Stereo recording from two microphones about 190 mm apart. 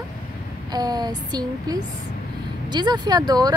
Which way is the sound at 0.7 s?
20° right (ahead or behind).